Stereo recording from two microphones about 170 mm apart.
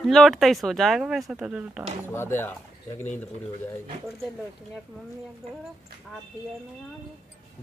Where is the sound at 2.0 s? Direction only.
15° left (ahead or behind).